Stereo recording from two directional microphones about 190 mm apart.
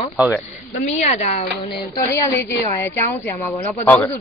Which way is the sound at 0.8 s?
35° left (ahead or behind).